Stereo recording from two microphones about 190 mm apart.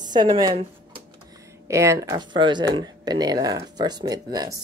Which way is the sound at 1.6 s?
15° right (ahead or behind).